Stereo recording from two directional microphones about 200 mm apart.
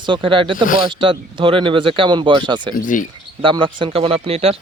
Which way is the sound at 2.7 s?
40° left (ahead or behind).